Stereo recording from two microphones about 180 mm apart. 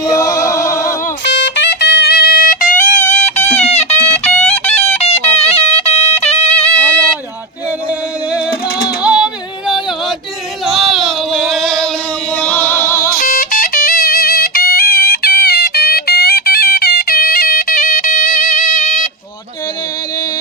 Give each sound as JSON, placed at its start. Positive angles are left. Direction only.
{"t": 0.0, "sound": "music", "side_deg": 20}
{"t": 1.2, "sound": "music", "side_deg": 80}
{"t": 6.7, "sound": "sheep", "side_deg": 10}
{"t": 9.0, "sound": "a sound", "side_deg": -5}
{"t": 12.4, "sound": "music", "side_deg": 10}
{"t": 13.1, "sound": "music", "side_deg": 55}